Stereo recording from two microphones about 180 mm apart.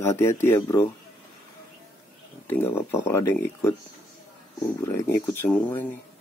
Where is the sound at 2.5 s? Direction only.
10° left (ahead or behind).